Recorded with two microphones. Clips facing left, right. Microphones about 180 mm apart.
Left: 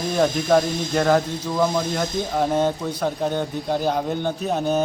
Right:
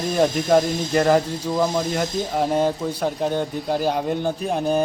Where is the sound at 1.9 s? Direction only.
5° right (ahead or behind).